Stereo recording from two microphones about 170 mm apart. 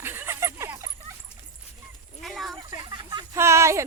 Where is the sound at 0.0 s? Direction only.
15° right (ahead or behind).